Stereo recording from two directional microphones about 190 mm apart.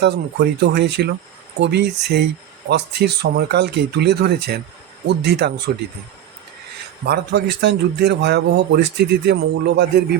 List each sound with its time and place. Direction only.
0.0 s a man's voice: 60° right (ahead or behind)
7.0 s a man's voice: 55° right (ahead or behind)